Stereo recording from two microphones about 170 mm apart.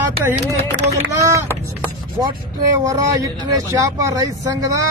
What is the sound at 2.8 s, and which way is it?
Speech, 20° right (ahead or behind).